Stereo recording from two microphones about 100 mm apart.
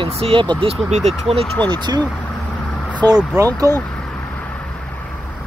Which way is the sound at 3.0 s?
40° right (ahead or behind).